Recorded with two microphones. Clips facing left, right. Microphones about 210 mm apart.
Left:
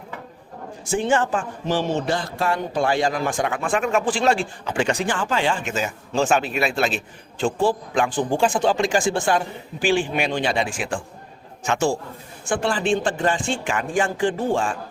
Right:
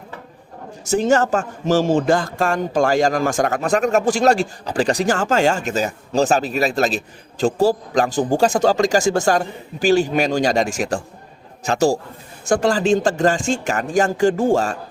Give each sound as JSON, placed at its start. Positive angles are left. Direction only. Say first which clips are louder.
{"t": 0.9, "sound": "a man's voice", "louder": "right 4 dB", "side_deg": -40}